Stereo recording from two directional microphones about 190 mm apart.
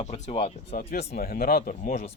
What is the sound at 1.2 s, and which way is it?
Speech, 50° left (ahead or behind).